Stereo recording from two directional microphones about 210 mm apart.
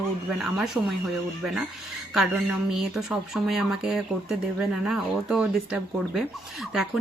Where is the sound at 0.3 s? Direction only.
Centre (ahead or behind).